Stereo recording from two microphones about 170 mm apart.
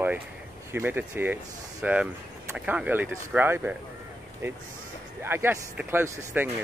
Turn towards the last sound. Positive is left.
turn(degrees=-10)  # may be behind; listen again after turning